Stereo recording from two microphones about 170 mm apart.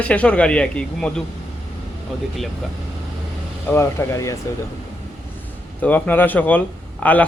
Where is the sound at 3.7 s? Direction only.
15° left (ahead or behind).